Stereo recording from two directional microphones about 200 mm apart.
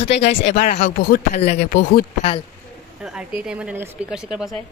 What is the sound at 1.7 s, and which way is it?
Speech, 60° left (ahead or behind).